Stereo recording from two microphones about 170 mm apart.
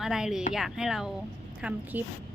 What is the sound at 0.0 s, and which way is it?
A woman's voice, centre (ahead or behind).